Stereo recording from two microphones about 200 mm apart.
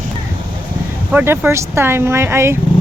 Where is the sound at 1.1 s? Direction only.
10° right (ahead or behind).